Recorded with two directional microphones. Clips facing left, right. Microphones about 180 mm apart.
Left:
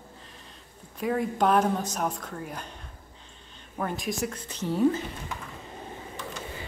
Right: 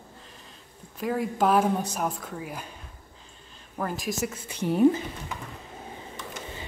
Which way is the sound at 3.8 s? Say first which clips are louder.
Even; centre (ahead or behind).